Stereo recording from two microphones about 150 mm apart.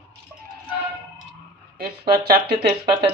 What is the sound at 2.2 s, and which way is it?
Speech, 90° right.